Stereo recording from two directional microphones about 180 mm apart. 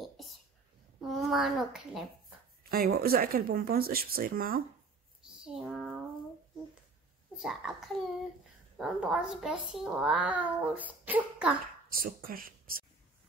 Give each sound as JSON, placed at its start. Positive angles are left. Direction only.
{"t": 1.0, "sound": "a child's voice", "side_deg": 0}
{"t": 2.7, "sound": "speech", "side_deg": -55}
{"t": 5.4, "sound": "a child's voice", "side_deg": -5}
{"t": 7.3, "sound": "a child's voice", "side_deg": 0}
{"t": 11.9, "sound": "speech", "side_deg": -55}